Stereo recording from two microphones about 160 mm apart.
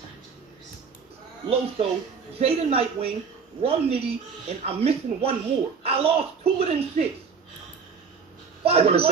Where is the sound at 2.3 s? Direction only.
40° right (ahead or behind).